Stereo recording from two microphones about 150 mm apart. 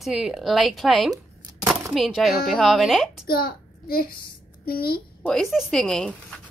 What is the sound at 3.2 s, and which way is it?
A child's voice, 90° left.